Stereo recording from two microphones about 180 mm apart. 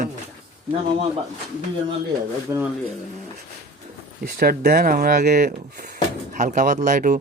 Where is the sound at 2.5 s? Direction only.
15° right (ahead or behind).